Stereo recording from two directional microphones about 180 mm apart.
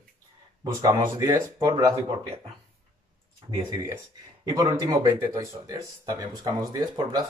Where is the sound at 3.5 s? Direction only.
20° right (ahead or behind).